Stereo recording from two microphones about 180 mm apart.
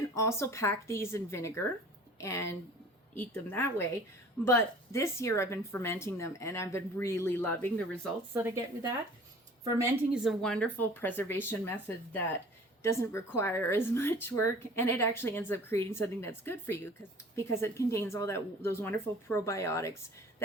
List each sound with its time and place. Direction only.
0.1 s a woman's voice: 15° left (ahead or behind)
8.3 s a woman's voice: 15° right (ahead or behind)
10.1 s a woman's voice: centre (ahead or behind)